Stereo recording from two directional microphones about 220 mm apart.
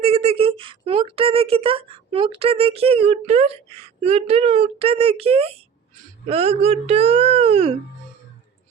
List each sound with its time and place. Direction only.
0.0 s speech: 30° right (ahead or behind)